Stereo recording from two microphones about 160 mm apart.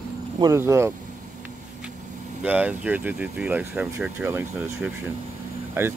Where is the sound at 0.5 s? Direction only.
15° right (ahead or behind).